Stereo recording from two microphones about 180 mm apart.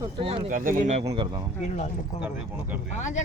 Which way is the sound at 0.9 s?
35° right (ahead or behind).